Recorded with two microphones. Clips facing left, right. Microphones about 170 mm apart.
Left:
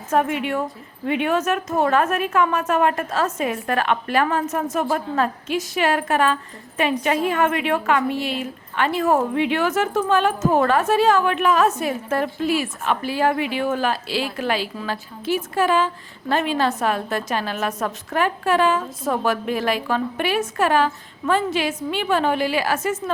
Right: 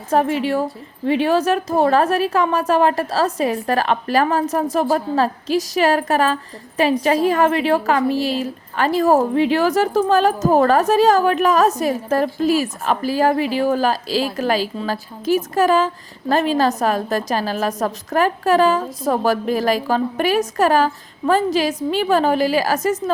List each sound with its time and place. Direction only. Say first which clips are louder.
0.1 s a woman's voice: right 3 dB; 35° right (ahead or behind)